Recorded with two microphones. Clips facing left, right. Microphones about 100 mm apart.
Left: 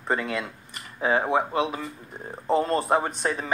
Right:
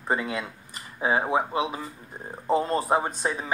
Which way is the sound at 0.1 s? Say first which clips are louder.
Left 1 dB; 20° right (ahead or behind).